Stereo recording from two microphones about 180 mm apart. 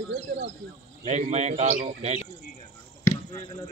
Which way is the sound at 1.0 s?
40° right (ahead or behind).